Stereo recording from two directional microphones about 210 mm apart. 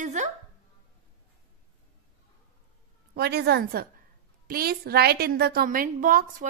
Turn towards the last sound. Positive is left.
turn(degrees=-40)  # may be behind; listen again after turning